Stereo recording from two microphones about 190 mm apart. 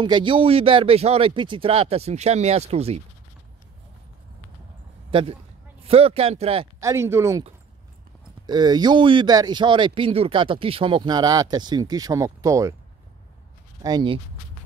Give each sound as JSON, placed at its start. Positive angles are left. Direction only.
{"t": 0.0, "sound": "speech", "side_deg": -25}
{"t": 5.1, "sound": "speech", "side_deg": -25}
{"t": 6.8, "sound": "speech", "side_deg": -15}
{"t": 8.5, "sound": "speech", "side_deg": -20}
{"t": 13.8, "sound": "speech", "side_deg": -25}